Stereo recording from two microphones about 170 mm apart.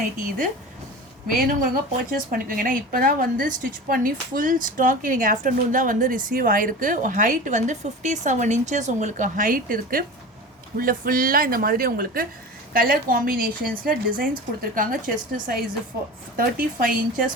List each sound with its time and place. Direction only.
1.4 s a woman's voice: 55° right (ahead or behind)